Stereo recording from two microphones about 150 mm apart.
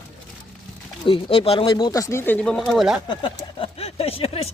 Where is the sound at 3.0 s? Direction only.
35° left (ahead or behind).